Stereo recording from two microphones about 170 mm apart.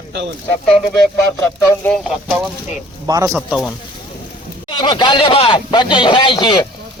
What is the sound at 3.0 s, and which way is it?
Speech, 20° right (ahead or behind).